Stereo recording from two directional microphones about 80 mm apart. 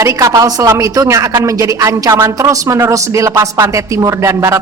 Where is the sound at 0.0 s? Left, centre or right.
Right.